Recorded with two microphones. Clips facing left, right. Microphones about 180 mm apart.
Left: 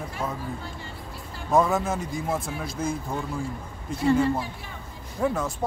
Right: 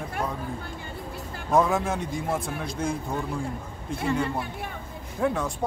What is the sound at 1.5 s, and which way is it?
Speech, centre (ahead or behind).